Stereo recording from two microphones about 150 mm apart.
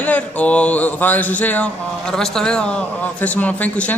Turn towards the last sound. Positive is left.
turn(degrees=10)  # may be behind; listen again after turning